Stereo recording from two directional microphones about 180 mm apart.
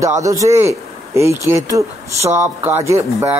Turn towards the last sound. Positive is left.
turn(degrees=-15)  # may be behind; listen again after turning